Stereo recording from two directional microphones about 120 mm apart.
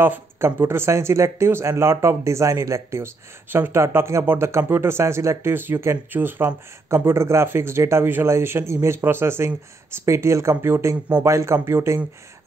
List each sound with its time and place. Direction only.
0.0 s speech: 15° right (ahead or behind)